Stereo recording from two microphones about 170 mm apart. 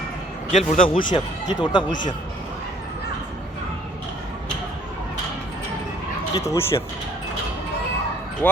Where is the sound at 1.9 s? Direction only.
50° left (ahead or behind).